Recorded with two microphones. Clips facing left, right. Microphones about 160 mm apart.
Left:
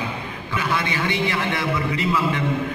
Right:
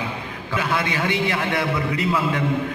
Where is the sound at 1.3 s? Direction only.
50° right (ahead or behind).